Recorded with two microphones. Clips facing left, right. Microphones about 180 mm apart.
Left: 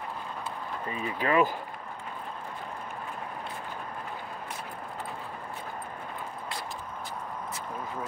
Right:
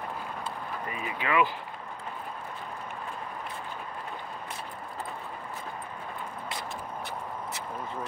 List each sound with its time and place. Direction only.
0.8 s speech: 35° left (ahead or behind)